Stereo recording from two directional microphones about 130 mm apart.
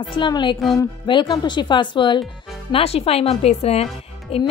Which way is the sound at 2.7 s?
50° left (ahead or behind).